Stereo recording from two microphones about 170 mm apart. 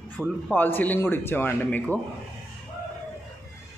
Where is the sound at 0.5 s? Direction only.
10° left (ahead or behind).